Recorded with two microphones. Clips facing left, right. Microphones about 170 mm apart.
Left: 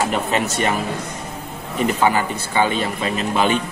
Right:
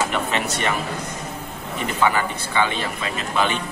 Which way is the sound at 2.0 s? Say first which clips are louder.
Right 2 dB; 35° left (ahead or behind).